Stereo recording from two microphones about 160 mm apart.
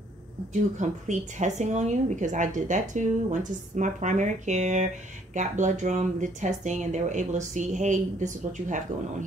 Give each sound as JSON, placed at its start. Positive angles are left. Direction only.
{"t": 0.5, "sound": "a woman's voice", "side_deg": -50}